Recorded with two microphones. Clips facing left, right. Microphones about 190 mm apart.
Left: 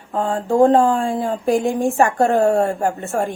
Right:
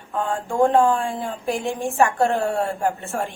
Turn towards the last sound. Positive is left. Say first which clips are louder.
# left 4 dB
turn(degrees=40)  # may be behind; listen again after turning